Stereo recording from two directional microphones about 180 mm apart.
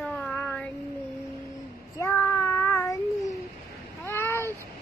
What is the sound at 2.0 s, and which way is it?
Child singing, 10° left (ahead or behind).